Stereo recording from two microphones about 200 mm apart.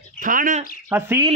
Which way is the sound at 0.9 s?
10° right (ahead or behind).